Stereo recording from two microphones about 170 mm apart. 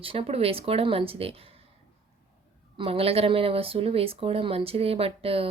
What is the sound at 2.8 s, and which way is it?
A woman's voice, 35° right (ahead or behind).